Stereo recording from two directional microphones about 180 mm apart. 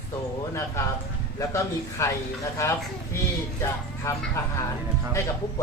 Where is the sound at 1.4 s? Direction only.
15° left (ahead or behind).